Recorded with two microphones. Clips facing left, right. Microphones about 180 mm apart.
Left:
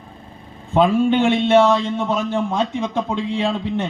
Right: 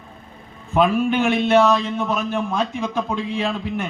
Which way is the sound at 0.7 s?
25° left (ahead or behind).